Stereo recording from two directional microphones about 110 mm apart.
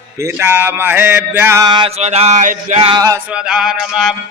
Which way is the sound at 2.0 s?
80° right.